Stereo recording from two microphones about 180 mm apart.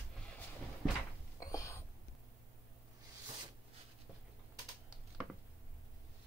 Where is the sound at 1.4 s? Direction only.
20° left (ahead or behind).